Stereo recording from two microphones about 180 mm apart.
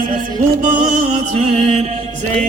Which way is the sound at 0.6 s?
45° right (ahead or behind).